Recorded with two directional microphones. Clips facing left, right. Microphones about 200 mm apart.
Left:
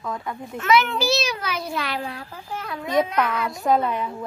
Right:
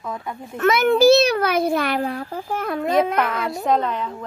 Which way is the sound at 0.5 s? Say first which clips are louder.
Right 5 dB; 50° right (ahead or behind).